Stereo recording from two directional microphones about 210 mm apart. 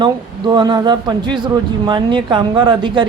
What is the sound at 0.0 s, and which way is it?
A woman's voice, 20° right (ahead or behind).